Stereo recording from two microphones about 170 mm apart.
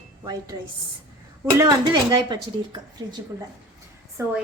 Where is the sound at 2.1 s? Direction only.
25° right (ahead or behind).